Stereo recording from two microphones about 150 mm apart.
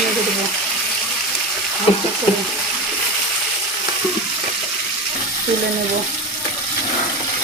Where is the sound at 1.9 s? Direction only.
35° left (ahead or behind).